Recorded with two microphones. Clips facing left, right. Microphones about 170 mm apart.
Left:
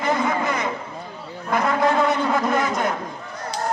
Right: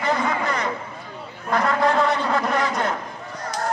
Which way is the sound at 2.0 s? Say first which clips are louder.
Left 1 dB; centre (ahead or behind).